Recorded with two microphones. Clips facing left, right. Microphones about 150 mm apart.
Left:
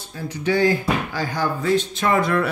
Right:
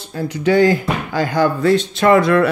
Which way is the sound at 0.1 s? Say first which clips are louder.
Right 6 dB; 80° right.